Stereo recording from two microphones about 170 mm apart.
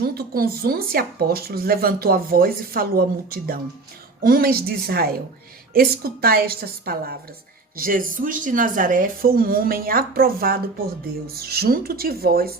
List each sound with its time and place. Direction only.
0.0 s speech: 65° right (ahead or behind)